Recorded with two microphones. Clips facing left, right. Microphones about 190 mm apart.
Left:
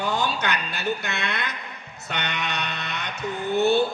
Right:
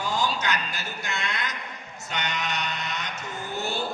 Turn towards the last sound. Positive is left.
turn(degrees=60)  # may be behind; listen again after turning